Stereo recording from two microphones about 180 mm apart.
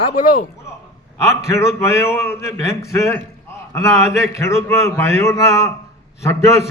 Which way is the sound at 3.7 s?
15° left (ahead or behind).